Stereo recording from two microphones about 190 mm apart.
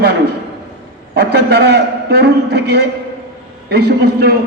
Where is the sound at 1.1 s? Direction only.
60° right (ahead or behind).